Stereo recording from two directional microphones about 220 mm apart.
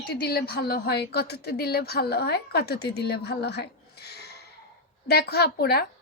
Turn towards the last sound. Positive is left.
turn(degrees=45)  # may be behind; listen again after turning